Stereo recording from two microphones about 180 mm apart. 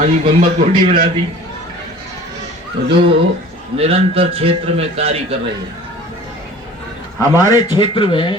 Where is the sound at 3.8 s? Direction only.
35° right (ahead or behind).